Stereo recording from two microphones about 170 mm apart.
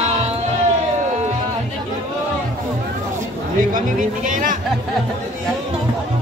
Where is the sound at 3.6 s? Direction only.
50° right (ahead or behind).